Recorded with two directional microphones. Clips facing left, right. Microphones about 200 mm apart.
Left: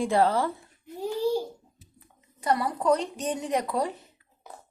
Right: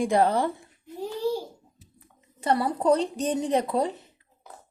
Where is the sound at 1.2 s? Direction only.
Centre (ahead or behind).